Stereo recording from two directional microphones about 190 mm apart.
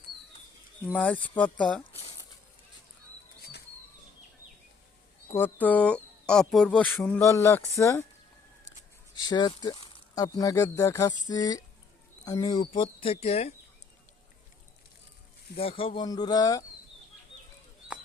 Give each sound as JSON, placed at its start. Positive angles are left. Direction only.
{"t": 0.9, "sound": "speech", "side_deg": 10}
{"t": 5.3, "sound": "speech", "side_deg": 10}
{"t": 7.2, "sound": "speech", "side_deg": 15}
{"t": 9.1, "sound": "speech", "side_deg": 20}
{"t": 15.5, "sound": "speech", "side_deg": 30}